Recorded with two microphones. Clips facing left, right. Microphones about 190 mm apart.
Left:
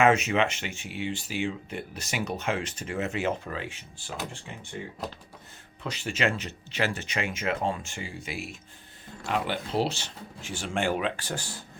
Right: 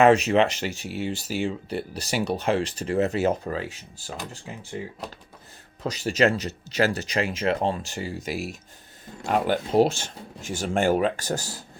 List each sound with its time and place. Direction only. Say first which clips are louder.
0.0 s speech: right 5 dB; 35° right (ahead or behind)
5.8 s speech: right 7 dB; 40° right (ahead or behind)